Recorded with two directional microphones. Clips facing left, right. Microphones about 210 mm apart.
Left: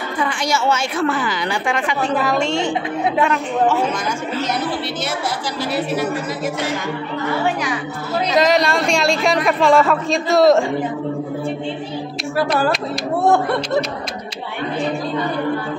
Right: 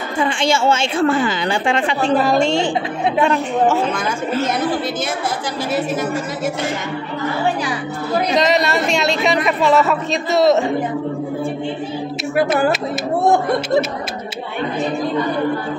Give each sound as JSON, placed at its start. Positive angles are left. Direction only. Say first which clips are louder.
{"t": 0.2, "sound": "a woman's voice", "louder": "right 4 dB", "side_deg": -25}
{"t": 8.4, "sound": "speech", "louder": "left 3 dB", "side_deg": 0}